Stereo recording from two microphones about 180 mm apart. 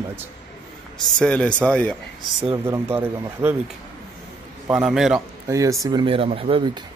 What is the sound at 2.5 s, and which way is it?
Speech, 15° right (ahead or behind).